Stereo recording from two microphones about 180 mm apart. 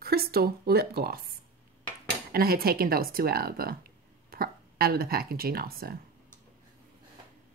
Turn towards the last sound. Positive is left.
turn(degrees=-55)  # may be behind; listen again after turning